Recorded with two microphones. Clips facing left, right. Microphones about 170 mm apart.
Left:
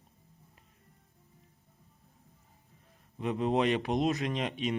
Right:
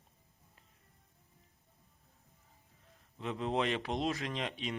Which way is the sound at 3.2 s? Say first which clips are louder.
Left 5 dB; 15° left (ahead or behind).